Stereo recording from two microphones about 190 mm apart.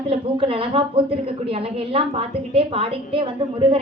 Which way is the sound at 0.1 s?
30° right (ahead or behind).